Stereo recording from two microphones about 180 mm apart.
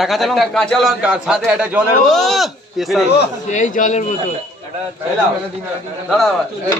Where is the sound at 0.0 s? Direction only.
Centre (ahead or behind).